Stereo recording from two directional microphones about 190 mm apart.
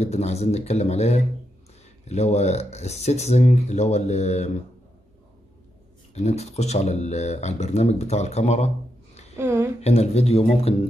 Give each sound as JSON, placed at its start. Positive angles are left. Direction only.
{"t": 0.0, "sound": "speech", "side_deg": 35}
{"t": 6.1, "sound": "speech", "side_deg": 35}
{"t": 9.4, "sound": "a woman's voice", "side_deg": -15}
{"t": 9.8, "sound": "speech", "side_deg": 35}